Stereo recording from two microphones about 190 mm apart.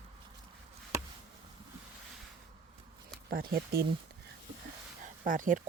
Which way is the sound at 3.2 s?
50° right (ahead or behind).